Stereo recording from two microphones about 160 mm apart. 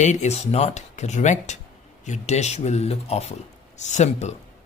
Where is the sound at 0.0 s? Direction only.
45° left (ahead or behind).